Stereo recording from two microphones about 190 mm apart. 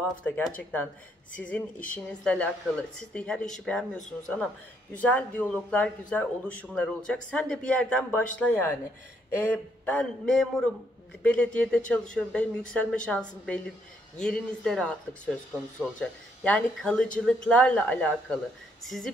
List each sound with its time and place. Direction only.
0.2 s speech: 10° left (ahead or behind)
16.0 s speech: 5° left (ahead or behind)